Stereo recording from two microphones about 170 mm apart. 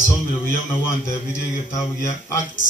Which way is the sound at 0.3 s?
15° left (ahead or behind).